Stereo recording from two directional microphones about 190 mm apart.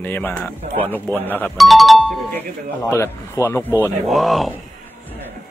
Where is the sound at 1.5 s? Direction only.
Centre (ahead or behind).